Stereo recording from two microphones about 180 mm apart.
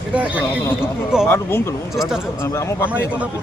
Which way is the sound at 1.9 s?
Centre (ahead or behind).